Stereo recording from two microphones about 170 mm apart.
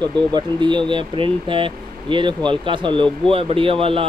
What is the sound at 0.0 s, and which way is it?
Speech, 25° right (ahead or behind).